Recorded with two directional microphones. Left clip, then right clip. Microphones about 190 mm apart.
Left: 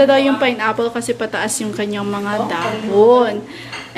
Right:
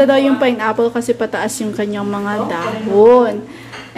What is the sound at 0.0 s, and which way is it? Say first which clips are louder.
A woman's voice: right 1 dB; 15° right (ahead or behind).